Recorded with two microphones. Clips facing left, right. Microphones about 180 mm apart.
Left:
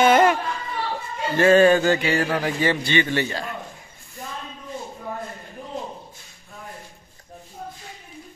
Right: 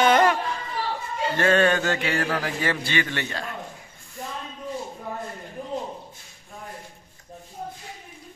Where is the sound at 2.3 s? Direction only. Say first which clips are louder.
Left 4 dB; 25° left (ahead or behind).